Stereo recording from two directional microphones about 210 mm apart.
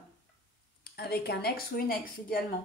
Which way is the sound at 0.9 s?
50° left (ahead or behind).